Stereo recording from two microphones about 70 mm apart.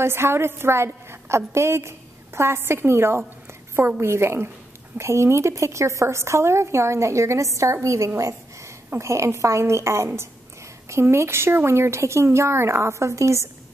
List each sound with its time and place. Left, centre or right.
0.0 s a woman's voice: right
8.2 s a sound: right
8.9 s speech: right